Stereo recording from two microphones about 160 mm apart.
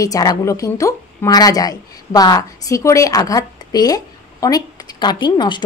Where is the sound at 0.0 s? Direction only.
20° left (ahead or behind).